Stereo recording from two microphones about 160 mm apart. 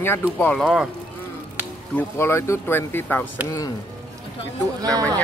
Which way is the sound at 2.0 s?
15° left (ahead or behind).